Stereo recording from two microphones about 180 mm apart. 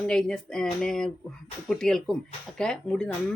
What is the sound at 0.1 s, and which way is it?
Speech, 5° left (ahead or behind).